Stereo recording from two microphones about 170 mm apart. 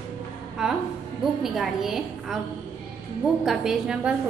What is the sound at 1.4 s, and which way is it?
Speech, centre (ahead or behind).